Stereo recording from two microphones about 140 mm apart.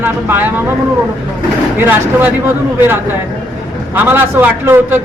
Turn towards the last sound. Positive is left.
turn(degrees=-15)  # may be behind; listen again after turning